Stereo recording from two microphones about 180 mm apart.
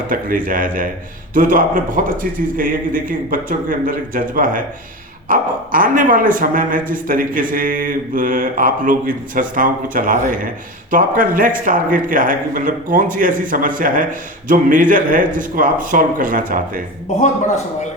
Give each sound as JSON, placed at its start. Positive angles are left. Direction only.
{"t": 0.1, "sound": "a man's voice", "side_deg": -50}